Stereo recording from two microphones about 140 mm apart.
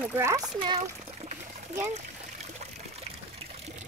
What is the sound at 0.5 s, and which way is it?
Speech, 35° right (ahead or behind).